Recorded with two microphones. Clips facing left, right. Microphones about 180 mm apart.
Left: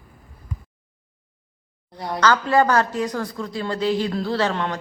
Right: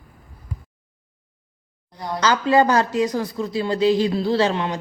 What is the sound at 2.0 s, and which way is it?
Speech, 20° left (ahead or behind).